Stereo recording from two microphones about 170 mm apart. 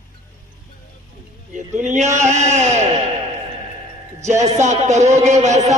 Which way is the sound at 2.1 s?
45° right (ahead or behind).